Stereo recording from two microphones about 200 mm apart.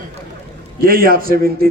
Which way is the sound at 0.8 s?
45° right (ahead or behind).